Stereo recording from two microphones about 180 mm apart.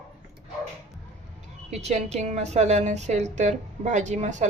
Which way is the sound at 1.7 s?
40° right (ahead or behind).